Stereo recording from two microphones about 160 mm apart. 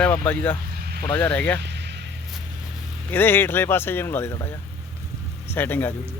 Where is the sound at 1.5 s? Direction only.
90° right.